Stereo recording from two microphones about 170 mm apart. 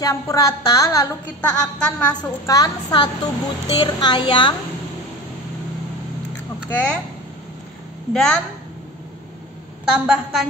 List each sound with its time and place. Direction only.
0.0 s a woman's voice: 20° left (ahead or behind)
1.4 s a woman's voice: 5° left (ahead or behind)
2.4 s a woman's voice: 20° left (ahead or behind)
6.7 s a woman's voice: 10° left (ahead or behind)
8.1 s a woman's voice: 5° left (ahead or behind)
9.9 s a woman's voice: 5° right (ahead or behind)